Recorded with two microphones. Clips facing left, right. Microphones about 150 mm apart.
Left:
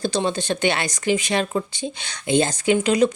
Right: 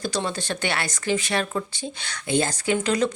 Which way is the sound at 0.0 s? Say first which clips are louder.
Left 5 dB; 25° left (ahead or behind).